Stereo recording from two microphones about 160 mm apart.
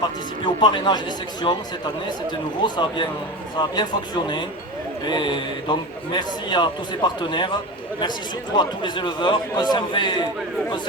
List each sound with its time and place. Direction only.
0.0 s speech: 30° left (ahead or behind)
2.6 s a man's voice: 30° left (ahead or behind)